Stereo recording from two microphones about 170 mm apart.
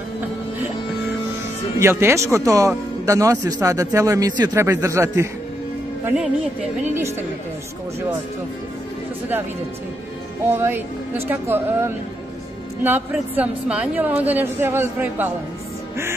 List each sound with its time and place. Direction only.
1.8 s a man's voice: 15° right (ahead or behind)
6.8 s a man's voice: 15° right (ahead or behind)
10.4 s a man's voice: 15° right (ahead or behind)